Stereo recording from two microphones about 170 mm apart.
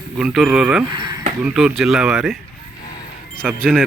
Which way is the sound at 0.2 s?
5° right (ahead or behind).